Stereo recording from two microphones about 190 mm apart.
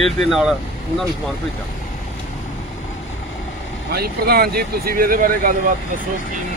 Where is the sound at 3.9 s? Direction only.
55° right (ahead or behind).